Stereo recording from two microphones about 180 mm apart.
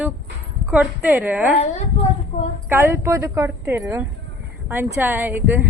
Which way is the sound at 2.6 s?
15° right (ahead or behind).